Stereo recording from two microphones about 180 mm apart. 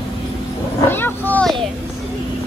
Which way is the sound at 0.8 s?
10° left (ahead or behind).